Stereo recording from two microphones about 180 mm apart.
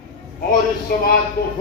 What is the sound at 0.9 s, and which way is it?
Speech, 55° left (ahead or behind).